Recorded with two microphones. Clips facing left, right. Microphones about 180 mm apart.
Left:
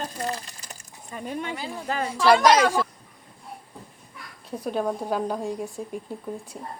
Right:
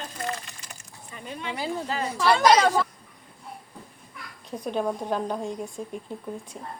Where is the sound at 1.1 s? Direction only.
45° left (ahead or behind).